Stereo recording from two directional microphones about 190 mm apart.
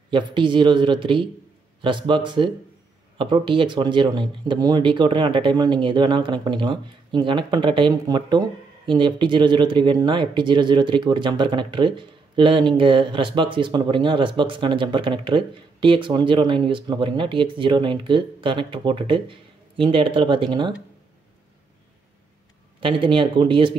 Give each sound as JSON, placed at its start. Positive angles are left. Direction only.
{"t": 0.1, "sound": "speech", "side_deg": -25}
{"t": 22.8, "sound": "speech", "side_deg": -25}